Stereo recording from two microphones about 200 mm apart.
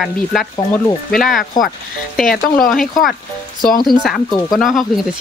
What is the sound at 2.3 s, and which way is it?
Speech, 45° left (ahead or behind).